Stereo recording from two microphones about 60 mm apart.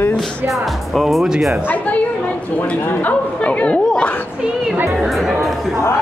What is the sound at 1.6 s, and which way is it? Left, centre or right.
Speech, left.